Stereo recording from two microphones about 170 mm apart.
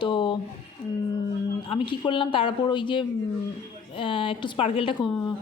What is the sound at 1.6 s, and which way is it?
A woman's voice, 30° left (ahead or behind).